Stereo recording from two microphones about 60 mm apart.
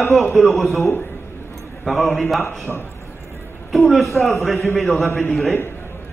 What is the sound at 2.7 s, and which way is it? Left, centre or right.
Speech, centre.